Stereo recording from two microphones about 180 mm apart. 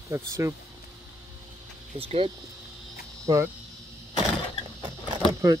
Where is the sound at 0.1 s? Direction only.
15° right (ahead or behind).